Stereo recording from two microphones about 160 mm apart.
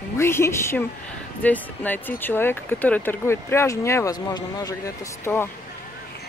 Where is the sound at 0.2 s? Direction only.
15° left (ahead or behind).